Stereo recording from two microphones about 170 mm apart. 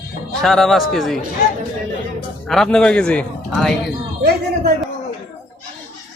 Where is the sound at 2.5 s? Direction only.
5° left (ahead or behind).